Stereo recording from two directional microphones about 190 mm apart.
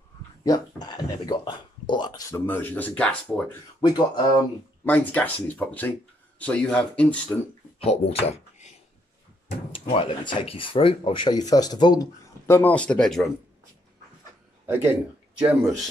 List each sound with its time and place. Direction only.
0.4 s speech: 20° left (ahead or behind)
2.4 s speech: 10° left (ahead or behind)
3.8 s speech: 20° left (ahead or behind)
4.8 s speech: 10° left (ahead or behind)
7.8 s speech: 30° left (ahead or behind)
9.8 s speech: 30° left (ahead or behind)
12.4 s speech: 10° left (ahead or behind)
14.7 s speech: 10° right (ahead or behind)